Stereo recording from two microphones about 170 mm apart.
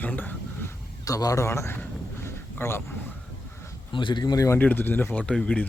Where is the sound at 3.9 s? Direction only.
30° left (ahead or behind); by 5.6 s 5° left (ahead or behind).